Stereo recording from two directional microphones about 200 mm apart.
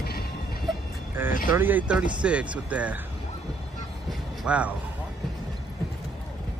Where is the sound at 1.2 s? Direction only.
10° right (ahead or behind).